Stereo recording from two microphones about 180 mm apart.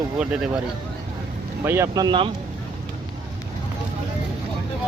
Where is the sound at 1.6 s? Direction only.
15° right (ahead or behind).